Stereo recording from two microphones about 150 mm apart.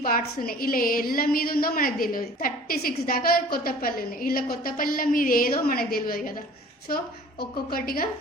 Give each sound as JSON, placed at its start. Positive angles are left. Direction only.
{"t": 0.0, "sound": "a woman's voice", "side_deg": 75}